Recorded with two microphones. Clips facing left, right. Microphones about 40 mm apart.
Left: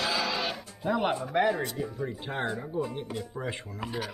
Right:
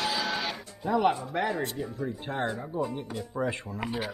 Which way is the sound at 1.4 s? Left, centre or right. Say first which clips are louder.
Left 1 dB; centre.